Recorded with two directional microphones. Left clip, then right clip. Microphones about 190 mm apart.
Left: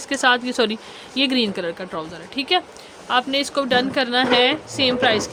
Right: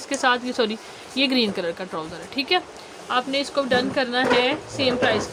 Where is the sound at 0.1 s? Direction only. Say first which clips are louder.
Left 3 dB; 15° left (ahead or behind).